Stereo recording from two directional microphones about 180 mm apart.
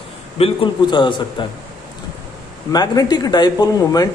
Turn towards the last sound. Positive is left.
turn(degrees=20)  # may be behind; listen again after turning